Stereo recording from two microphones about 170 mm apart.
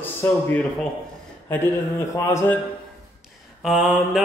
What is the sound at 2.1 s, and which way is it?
Speech, 15° left (ahead or behind).